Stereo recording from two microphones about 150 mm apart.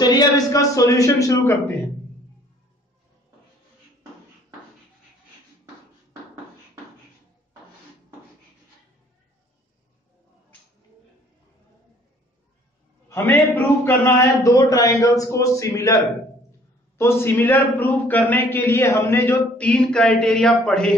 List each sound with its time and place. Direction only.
0.0 s a man's voice: 25° left (ahead or behind)
13.1 s a man's voice: 15° left (ahead or behind)
17.0 s a man's voice: 15° left (ahead or behind)